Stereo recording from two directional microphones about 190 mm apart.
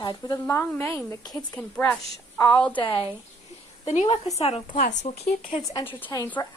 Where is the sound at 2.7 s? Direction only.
25° left (ahead or behind).